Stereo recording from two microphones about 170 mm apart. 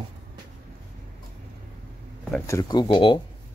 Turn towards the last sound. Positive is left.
turn(degrees=30)  # may be behind; listen again after turning